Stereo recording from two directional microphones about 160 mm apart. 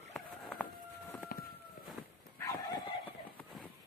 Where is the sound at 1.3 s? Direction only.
65° left (ahead or behind).